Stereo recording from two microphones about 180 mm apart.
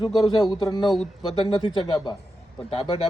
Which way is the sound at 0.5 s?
25° left (ahead or behind).